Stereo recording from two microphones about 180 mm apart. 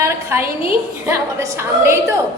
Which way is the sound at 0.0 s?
15° right (ahead or behind).